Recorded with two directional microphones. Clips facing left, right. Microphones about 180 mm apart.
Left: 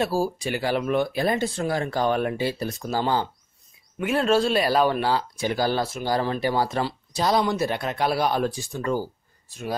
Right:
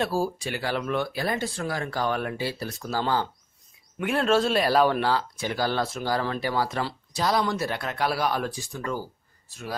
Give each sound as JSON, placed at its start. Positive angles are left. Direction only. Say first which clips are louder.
{"t": 0.0, "sound": "speech", "louder": "left 2 dB", "side_deg": 10}
{"t": 4.0, "sound": "speech", "louder": "left 2 dB", "side_deg": 5}
{"t": 5.0, "sound": "speech", "louder": "left 2 dB", "side_deg": 15}